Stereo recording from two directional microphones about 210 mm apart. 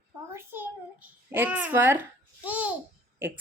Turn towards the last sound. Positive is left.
turn(degrees=-10)  # may be behind; listen again after turning